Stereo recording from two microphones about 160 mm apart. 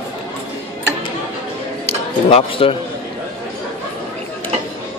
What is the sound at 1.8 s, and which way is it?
Speech, 35° left (ahead or behind).